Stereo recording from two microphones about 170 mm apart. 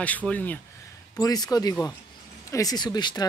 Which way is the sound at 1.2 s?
20° left (ahead or behind).